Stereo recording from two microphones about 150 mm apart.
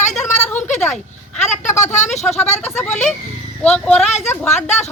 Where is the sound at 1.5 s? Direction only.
50° left (ahead or behind).